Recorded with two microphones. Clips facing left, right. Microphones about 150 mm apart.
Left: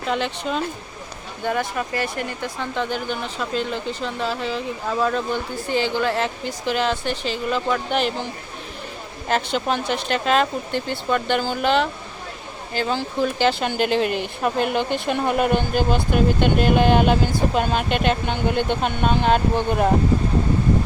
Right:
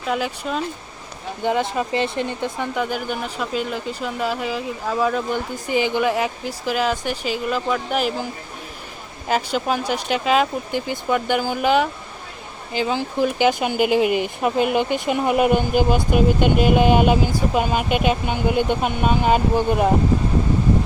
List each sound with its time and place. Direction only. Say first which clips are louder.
0.1 s speech: even; 5° right (ahead or behind)
1.5 s speech: right 3 dB; 20° right (ahead or behind)
2.7 s speech: right 1 dB; 10° right (ahead or behind)
9.3 s speech: right 1 dB; 5° right (ahead or behind)